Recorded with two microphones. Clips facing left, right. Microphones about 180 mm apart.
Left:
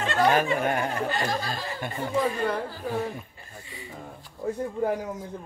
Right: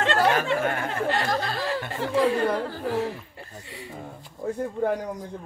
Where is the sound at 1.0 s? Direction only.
65° right (ahead or behind).